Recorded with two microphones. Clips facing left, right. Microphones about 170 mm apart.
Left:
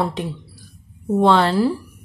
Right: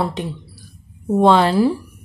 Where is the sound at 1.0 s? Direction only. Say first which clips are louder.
Right 2 dB; 15° right (ahead or behind).